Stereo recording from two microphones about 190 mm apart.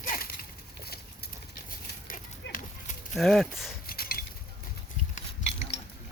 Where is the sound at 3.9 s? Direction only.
50° left (ahead or behind).